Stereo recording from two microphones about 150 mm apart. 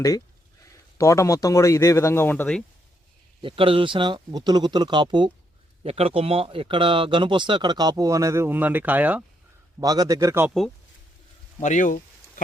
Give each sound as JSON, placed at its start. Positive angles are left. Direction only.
{"t": 0.7, "sound": "speech", "side_deg": 20}
{"t": 3.4, "sound": "speech", "side_deg": -35}
{"t": 5.8, "sound": "speech", "side_deg": -40}
{"t": 9.8, "sound": "a man's voice", "side_deg": -25}
{"t": 11.6, "sound": "speech", "side_deg": 55}